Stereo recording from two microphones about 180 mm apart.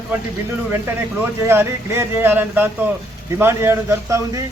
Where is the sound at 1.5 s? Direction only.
15° right (ahead or behind).